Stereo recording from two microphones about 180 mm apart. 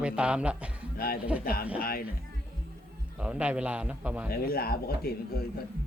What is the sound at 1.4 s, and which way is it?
Speech, 55° left (ahead or behind).